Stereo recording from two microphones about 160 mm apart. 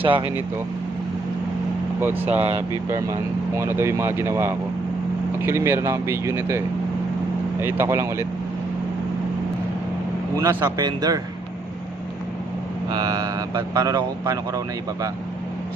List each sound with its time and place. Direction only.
0.0 s speech: 30° right (ahead or behind)
2.0 s speech: 15° right (ahead or behind)
7.6 s speech: 15° right (ahead or behind)
10.3 s speech: 20° right (ahead or behind)
12.9 s speech: 25° right (ahead or behind)